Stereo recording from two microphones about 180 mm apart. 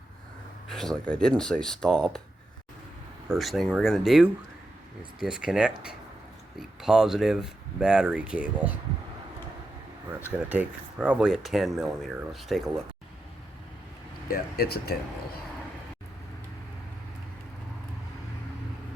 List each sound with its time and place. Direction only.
0.7 s speech: centre (ahead or behind)
3.2 s speech: centre (ahead or behind)
10.3 s speech: 10° right (ahead or behind)
14.3 s speech: 55° left (ahead or behind)